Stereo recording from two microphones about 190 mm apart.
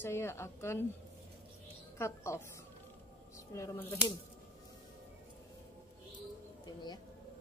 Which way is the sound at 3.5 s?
15° left (ahead or behind).